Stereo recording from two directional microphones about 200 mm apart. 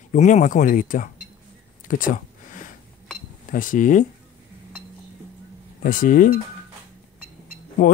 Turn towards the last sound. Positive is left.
turn(degrees=45)  # may be behind; listen again after turning